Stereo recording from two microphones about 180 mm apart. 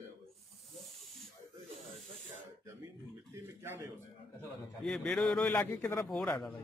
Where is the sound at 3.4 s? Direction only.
15° right (ahead or behind).